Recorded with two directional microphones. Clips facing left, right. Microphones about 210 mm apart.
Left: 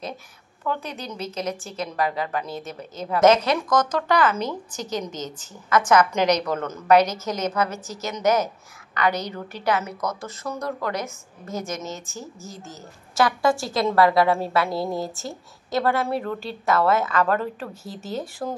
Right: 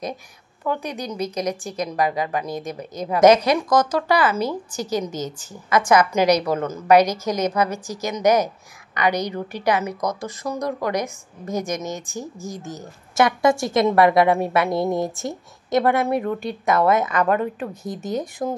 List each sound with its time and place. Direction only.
0.7 s a woman's voice: 15° right (ahead or behind)